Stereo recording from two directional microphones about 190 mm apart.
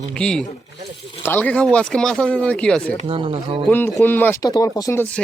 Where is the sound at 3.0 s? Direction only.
25° right (ahead or behind).